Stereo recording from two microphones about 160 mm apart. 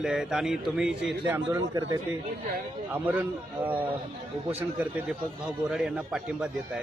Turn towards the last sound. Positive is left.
turn(degrees=-5)  # may be behind; listen again after turning